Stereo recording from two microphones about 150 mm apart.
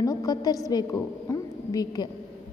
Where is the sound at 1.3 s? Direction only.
25° left (ahead or behind).